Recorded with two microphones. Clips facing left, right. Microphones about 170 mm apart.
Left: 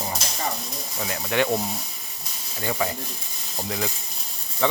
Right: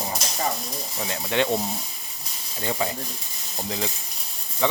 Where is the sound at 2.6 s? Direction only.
20° right (ahead or behind).